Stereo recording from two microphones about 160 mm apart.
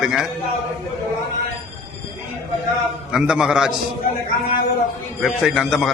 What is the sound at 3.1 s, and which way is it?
Speech, 5° right (ahead or behind).